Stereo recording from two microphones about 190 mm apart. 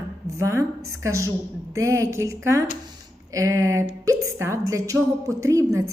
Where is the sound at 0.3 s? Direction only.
15° right (ahead or behind).